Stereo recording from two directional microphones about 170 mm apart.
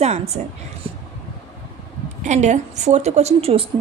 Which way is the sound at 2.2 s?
45° right (ahead or behind).